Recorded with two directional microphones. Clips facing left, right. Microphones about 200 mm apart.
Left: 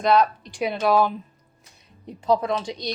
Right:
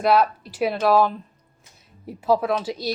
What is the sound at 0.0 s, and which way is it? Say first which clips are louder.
A woman's voice: even; 5° right (ahead or behind).